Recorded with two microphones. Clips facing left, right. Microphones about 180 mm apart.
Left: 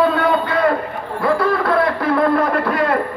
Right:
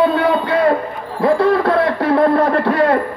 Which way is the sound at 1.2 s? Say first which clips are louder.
Right 4 dB; 30° right (ahead or behind).